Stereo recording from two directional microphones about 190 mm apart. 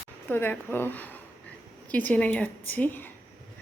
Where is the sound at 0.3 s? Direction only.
10° left (ahead or behind).